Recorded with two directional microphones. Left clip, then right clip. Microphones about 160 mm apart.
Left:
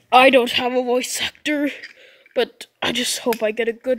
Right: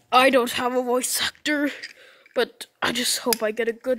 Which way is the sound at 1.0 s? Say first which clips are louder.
Left 2 dB; centre (ahead or behind).